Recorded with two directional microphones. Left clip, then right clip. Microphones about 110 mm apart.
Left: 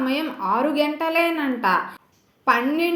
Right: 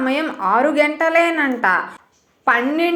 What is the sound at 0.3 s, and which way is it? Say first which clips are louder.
A woman's voice: right 7 dB; 15° left (ahead or behind).